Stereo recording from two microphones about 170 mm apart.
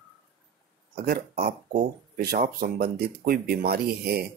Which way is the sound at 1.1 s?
55° right (ahead or behind).